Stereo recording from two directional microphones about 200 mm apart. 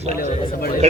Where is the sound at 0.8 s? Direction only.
35° right (ahead or behind).